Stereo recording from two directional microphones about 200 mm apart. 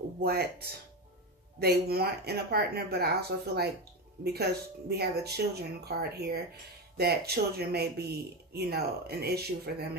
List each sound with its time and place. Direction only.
0.2 s speech: 50° right (ahead or behind)
1.6 s speech: 50° right (ahead or behind)